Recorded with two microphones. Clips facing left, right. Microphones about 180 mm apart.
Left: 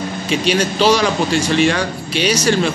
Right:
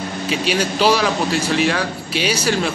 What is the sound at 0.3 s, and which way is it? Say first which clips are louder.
Speech: left 3 dB; 5° right (ahead or behind).